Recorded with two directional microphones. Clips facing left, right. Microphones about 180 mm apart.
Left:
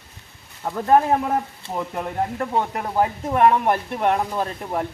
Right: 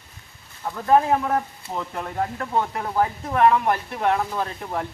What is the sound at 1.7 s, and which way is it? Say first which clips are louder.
Speech: left 2 dB; 15° left (ahead or behind).